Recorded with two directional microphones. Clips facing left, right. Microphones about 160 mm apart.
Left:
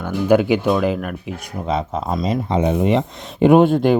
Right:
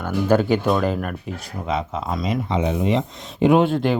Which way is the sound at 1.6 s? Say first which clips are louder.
Left 3 dB; 35° left (ahead or behind).